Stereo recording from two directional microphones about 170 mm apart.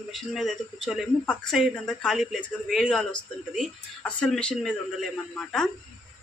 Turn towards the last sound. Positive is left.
turn(degrees=5)  # may be behind; listen again after turning